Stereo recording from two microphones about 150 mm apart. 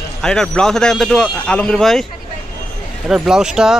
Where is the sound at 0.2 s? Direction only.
5° left (ahead or behind).